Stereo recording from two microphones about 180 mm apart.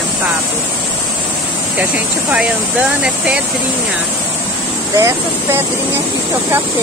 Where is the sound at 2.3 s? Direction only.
5° right (ahead or behind).